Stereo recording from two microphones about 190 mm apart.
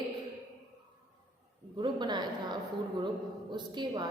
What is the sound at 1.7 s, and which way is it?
A woman's voice, 25° right (ahead or behind).